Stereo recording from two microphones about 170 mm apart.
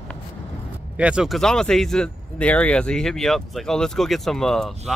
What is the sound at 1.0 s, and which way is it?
Speech, 5° right (ahead or behind).